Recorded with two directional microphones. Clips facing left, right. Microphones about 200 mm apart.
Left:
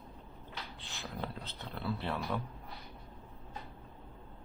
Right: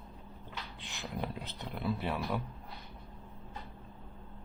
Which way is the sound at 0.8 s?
15° right (ahead or behind).